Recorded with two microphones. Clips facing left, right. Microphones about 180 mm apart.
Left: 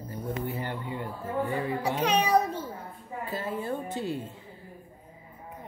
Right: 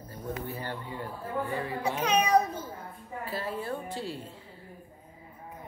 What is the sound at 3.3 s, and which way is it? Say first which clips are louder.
Speech: left 2 dB; 20° left (ahead or behind).